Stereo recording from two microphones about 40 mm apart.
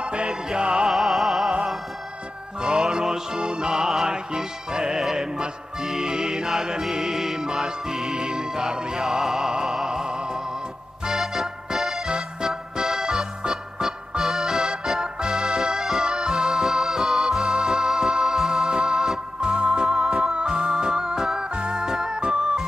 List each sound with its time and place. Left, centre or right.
0.0 s music: right
0.8 s music: centre
2.6 s music: centre
12.1 s music: centre
12.8 s music: centre; by 22.6 s right